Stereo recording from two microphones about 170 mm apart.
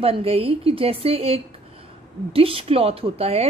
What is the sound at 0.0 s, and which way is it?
A woman's voice, 35° right (ahead or behind).